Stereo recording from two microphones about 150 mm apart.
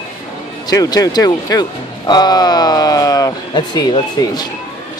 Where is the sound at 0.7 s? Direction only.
25° left (ahead or behind).